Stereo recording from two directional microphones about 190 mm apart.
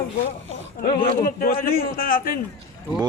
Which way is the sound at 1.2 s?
50° left (ahead or behind).